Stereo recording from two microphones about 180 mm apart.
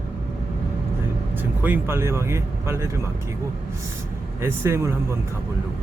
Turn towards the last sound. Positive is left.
turn(degrees=-15)  # may be behind; listen again after turning